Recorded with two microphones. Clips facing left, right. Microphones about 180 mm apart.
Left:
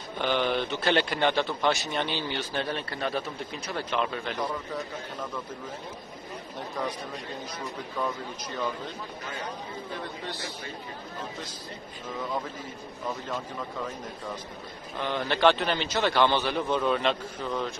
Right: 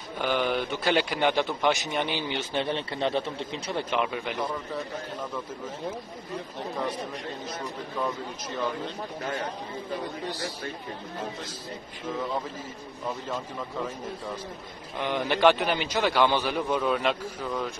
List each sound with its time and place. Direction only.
0.2 s a man's voice: 5° right (ahead or behind)
15.0 s a man's voice: 15° right (ahead or behind)